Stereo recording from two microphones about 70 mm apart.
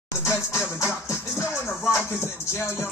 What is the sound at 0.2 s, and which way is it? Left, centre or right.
Music, left.